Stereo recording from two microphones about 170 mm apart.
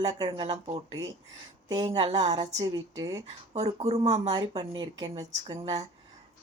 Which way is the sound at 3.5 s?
35° right (ahead or behind).